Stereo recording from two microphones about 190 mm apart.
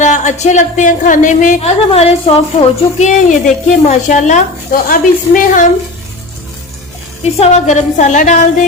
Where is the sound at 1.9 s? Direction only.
30° left (ahead or behind).